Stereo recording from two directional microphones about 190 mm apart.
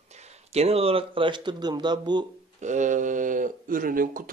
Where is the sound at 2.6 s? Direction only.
40° right (ahead or behind).